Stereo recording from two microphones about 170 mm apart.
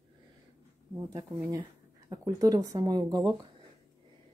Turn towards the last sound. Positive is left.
turn(degrees=-25)  # may be behind; listen again after turning